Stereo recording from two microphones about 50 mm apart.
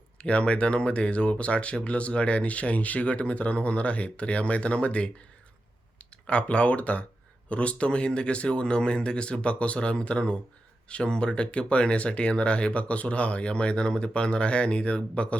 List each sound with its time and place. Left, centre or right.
0.2 s speech: left
6.2 s speech: left